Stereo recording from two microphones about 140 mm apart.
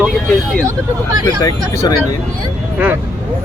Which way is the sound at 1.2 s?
30° left (ahead or behind).